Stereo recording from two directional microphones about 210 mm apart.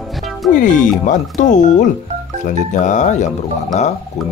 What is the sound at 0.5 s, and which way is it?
Speech, 40° left (ahead or behind).